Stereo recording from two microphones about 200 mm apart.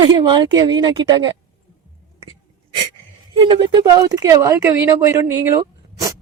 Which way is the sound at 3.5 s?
20° right (ahead or behind).